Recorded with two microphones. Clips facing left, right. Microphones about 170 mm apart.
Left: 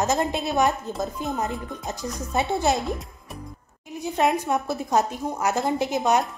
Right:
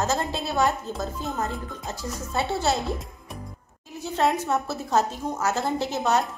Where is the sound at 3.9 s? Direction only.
15° left (ahead or behind).